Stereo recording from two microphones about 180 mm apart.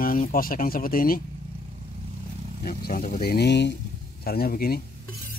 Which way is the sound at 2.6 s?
55° left (ahead or behind).